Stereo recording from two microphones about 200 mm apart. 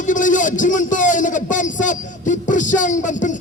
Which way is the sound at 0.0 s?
40° left (ahead or behind).